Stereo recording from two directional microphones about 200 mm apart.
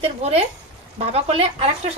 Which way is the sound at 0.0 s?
30° right (ahead or behind).